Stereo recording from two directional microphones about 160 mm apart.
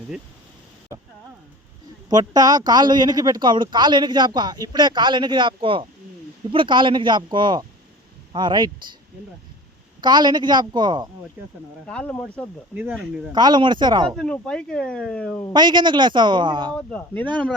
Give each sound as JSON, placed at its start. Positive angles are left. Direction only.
{"t": 0.9, "sound": "speech", "side_deg": -20}
{"t": 10.0, "sound": "speech", "side_deg": -25}
{"t": 11.4, "sound": "speech", "side_deg": -15}
{"t": 11.9, "sound": "speech", "side_deg": 10}
{"t": 12.7, "sound": "speech", "side_deg": -10}
{"t": 13.3, "sound": "speech", "side_deg": -25}
{"t": 14.2, "sound": "speech", "side_deg": 5}
{"t": 15.5, "sound": "speech", "side_deg": -30}
{"t": 16.7, "sound": "speech", "side_deg": 10}